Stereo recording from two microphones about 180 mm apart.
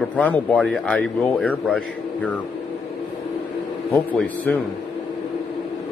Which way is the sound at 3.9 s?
10° left (ahead or behind).